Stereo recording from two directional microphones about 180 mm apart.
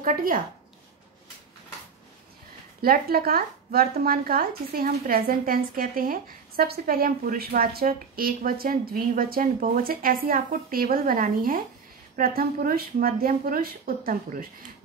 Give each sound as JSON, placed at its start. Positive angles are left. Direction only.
{"t": 0.0, "sound": "speech", "side_deg": -50}
{"t": 2.8, "sound": "speech", "side_deg": -55}